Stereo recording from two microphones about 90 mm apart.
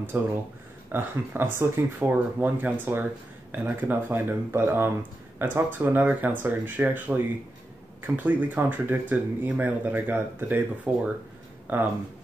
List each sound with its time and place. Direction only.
0.0 s speech: 25° right (ahead or behind)